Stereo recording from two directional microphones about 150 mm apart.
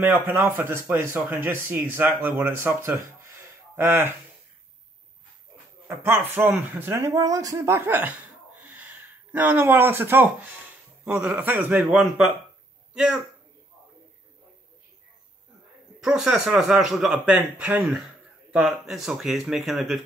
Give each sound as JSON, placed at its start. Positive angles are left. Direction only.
{"t": 0.0, "sound": "speech", "side_deg": -15}
{"t": 5.9, "sound": "a man's voice", "side_deg": -15}
{"t": 16.0, "sound": "speech", "side_deg": -5}